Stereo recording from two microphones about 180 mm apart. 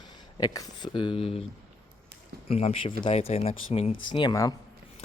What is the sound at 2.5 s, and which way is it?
Speech, 35° left (ahead or behind).